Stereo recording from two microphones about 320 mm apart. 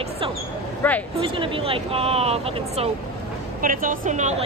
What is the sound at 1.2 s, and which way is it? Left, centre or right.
A woman's voice, centre.